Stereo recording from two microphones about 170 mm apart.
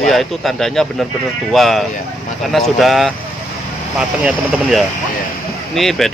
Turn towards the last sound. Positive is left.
turn(degrees=0)  # may be behind; listen again after turning